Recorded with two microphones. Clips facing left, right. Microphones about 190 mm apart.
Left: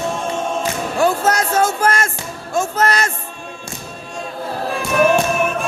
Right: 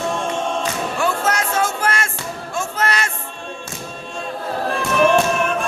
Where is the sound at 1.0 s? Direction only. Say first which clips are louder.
Left 6 dB; 40° left (ahead or behind).